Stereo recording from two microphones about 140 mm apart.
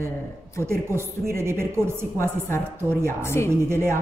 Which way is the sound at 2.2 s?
20° left (ahead or behind).